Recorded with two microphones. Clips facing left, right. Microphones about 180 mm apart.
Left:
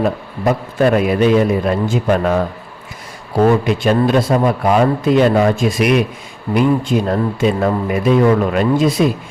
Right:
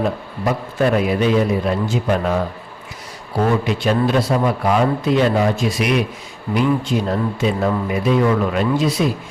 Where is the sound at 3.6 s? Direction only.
50° left (ahead or behind).